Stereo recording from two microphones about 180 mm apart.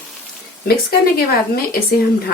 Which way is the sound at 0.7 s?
60° left (ahead or behind).